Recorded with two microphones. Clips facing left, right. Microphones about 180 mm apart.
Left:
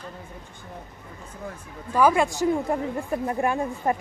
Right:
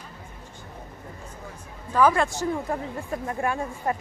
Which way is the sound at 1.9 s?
10° left (ahead or behind).